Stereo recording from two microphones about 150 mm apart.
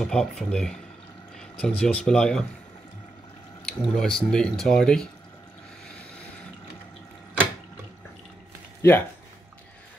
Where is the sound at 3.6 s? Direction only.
5° left (ahead or behind).